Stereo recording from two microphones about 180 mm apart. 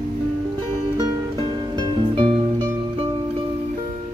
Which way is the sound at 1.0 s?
20° right (ahead or behind).